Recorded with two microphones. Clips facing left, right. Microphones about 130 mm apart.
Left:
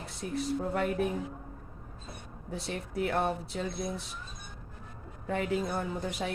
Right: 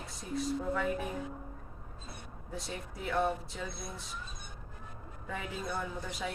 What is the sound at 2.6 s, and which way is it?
Speech, 65° left (ahead or behind).